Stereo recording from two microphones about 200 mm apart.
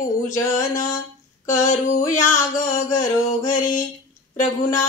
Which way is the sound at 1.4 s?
40° left (ahead or behind).